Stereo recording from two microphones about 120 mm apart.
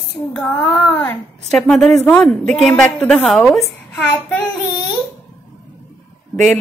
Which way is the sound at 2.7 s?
10° left (ahead or behind).